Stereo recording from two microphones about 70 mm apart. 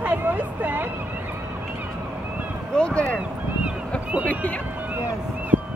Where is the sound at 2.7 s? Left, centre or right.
Centre.